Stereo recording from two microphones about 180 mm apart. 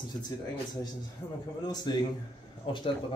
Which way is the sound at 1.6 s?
25° left (ahead or behind).